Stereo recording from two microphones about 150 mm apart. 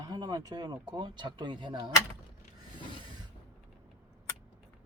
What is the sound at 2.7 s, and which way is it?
Rub, 30° right (ahead or behind).